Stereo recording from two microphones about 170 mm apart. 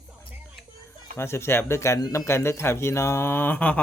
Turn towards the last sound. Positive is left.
turn(degrees=10)  # may be behind; listen again after turning